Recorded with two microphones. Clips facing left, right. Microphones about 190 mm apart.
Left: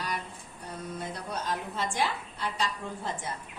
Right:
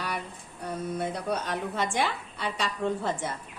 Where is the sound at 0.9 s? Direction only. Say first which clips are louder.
Right 6 dB; 65° right (ahead or behind).